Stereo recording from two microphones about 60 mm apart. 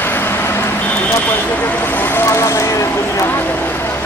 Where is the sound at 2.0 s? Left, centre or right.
Left.